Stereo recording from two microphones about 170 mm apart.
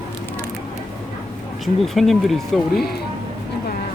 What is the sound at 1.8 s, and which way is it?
Speech, centre (ahead or behind).